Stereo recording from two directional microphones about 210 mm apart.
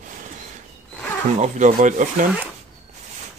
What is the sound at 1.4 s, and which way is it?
Speech, 35° right (ahead or behind).